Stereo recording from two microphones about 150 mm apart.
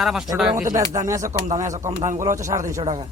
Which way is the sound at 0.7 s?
20° right (ahead or behind).